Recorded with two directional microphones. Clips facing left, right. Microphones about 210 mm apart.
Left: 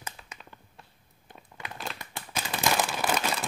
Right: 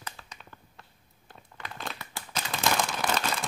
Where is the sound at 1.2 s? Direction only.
15° left (ahead or behind).